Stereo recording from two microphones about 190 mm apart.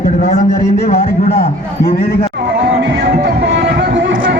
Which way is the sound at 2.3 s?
65° right (ahead or behind).